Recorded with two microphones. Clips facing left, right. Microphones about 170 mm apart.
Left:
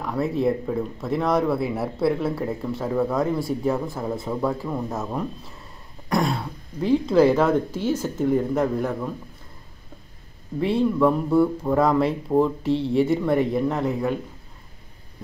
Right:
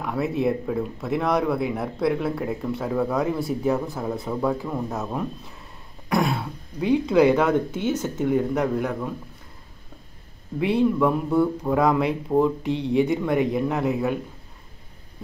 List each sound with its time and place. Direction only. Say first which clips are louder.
0.0 s speech: left 1 dB; centre (ahead or behind)
10.6 s speech: even; centre (ahead or behind)